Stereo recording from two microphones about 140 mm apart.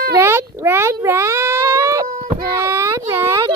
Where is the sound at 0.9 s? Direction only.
20° right (ahead or behind).